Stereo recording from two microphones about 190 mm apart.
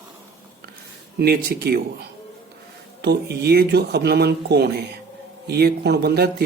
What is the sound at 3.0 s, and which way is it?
Speech, 60° right (ahead or behind).